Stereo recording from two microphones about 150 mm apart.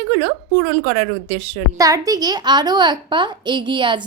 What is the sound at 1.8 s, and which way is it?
A child's voice, 25° right (ahead or behind).